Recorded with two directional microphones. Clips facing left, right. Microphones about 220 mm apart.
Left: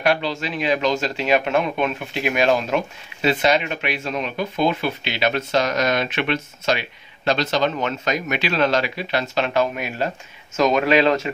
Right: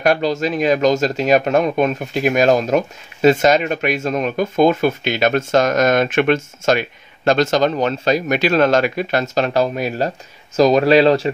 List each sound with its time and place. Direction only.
0.0 s speech: 45° right (ahead or behind)